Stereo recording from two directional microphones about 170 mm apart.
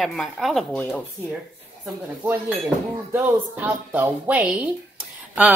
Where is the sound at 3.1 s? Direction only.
10° right (ahead or behind).